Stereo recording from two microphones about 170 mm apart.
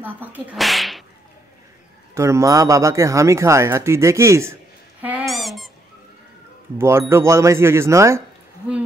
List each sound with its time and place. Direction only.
0.0 s speech: 10° right (ahead or behind)
2.1 s speech: 15° right (ahead or behind)
5.0 s squeak: 5° right (ahead or behind)
6.8 s speech: 15° right (ahead or behind)